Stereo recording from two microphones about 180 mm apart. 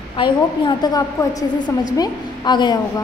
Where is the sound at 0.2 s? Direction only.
25° left (ahead or behind).